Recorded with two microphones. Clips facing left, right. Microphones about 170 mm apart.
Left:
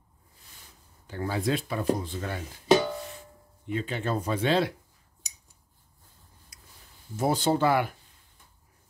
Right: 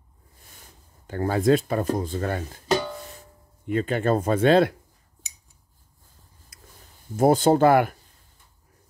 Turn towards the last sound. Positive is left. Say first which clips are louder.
# right 7 dB
turn(degrees=-50)  # may be behind; listen again after turning